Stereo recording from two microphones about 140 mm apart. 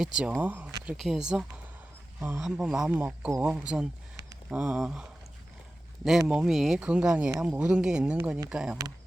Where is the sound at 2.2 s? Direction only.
15° right (ahead or behind).